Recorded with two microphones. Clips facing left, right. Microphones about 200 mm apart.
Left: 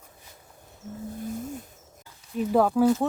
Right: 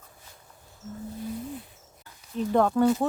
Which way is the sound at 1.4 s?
45° left (ahead or behind).